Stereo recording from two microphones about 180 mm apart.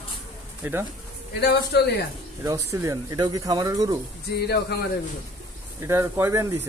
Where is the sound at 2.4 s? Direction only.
15° right (ahead or behind).